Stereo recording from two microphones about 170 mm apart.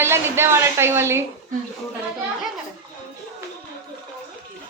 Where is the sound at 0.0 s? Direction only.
15° right (ahead or behind).